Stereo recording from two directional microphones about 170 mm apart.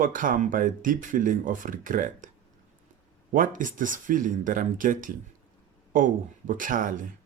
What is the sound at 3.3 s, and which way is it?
Speech, 50° right (ahead or behind).